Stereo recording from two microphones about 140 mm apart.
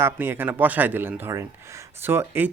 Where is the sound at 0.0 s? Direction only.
15° right (ahead or behind).